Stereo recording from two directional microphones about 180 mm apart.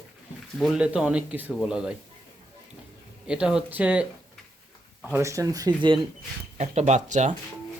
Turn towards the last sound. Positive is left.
turn(degrees=-40)  # may be behind; listen again after turning